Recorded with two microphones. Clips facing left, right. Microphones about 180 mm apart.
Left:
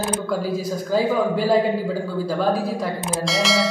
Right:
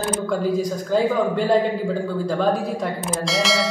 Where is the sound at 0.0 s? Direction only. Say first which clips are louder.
Right 1 dB; 5° left (ahead or behind).